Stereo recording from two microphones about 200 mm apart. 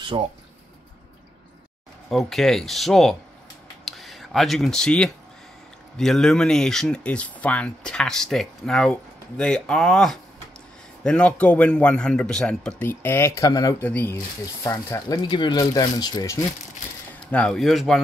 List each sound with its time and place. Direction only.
0.1 s speech: 25° right (ahead or behind)
2.0 s a man's voice: centre (ahead or behind); by 16.4 s 15° left (ahead or behind)
17.3 s speech: 5° left (ahead or behind)